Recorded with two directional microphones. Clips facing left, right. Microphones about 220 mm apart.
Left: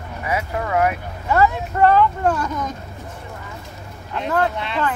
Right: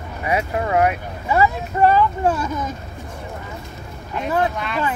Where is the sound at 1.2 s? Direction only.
10° right (ahead or behind).